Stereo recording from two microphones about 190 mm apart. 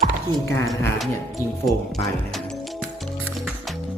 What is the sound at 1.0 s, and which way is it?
Music, centre (ahead or behind).